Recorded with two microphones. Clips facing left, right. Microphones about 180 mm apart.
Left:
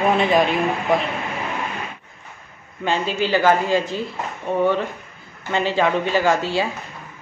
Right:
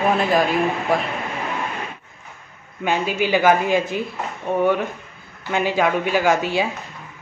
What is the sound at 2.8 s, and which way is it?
Speech, 10° right (ahead or behind).